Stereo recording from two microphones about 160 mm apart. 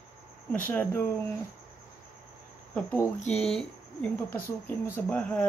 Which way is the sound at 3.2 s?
40° left (ahead or behind).